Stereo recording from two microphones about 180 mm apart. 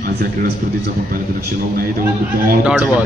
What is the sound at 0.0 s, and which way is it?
A man's voice, 55° right (ahead or behind).